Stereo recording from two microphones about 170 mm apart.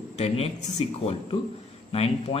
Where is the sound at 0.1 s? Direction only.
40° left (ahead or behind).